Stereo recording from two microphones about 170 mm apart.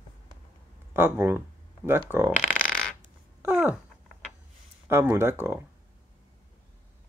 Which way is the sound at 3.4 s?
10° right (ahead or behind).